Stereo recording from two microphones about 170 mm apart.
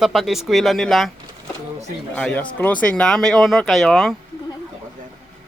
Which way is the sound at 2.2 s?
5° left (ahead or behind).